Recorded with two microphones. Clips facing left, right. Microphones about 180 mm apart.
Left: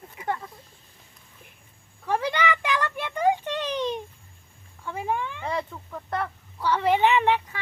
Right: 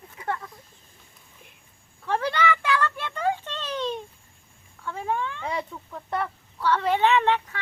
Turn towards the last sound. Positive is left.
turn(degrees=10)  # may be behind; listen again after turning